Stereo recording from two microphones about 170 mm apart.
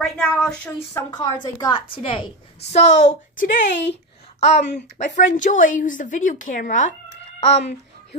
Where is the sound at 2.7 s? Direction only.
40° left (ahead or behind).